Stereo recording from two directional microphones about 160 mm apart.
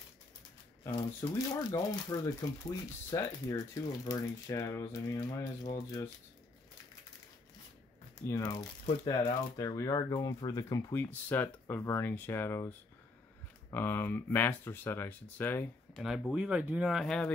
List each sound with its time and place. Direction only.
1.2 s speech: 20° left (ahead or behind)
8.3 s speech: 20° left (ahead or behind)
16.0 s speech: centre (ahead or behind)